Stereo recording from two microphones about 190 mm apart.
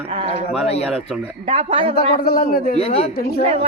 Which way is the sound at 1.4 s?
30° right (ahead or behind).